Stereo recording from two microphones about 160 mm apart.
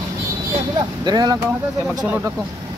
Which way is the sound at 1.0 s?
25° right (ahead or behind).